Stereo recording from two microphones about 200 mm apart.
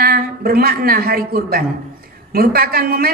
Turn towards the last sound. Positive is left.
turn(degrees=-50)  # may be behind; listen again after turning